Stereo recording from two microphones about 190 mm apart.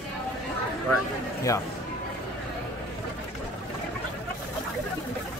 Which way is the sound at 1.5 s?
15° left (ahead or behind).